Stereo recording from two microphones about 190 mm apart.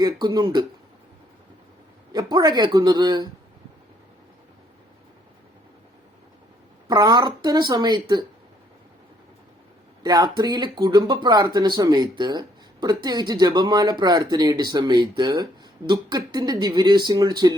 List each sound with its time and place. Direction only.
0.0 s speech: 20° right (ahead or behind)
2.1 s speech: 20° right (ahead or behind)
6.8 s speech: 20° right (ahead or behind)
10.0 s speech: 20° right (ahead or behind)